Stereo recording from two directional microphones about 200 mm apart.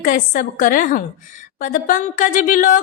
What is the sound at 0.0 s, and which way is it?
A woman's voice, 40° left (ahead or behind).